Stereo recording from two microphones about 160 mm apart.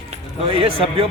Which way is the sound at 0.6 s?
35° right (ahead or behind).